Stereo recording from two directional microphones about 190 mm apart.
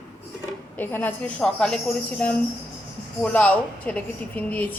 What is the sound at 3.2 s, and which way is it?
A woman's voice, 5° left (ahead or behind).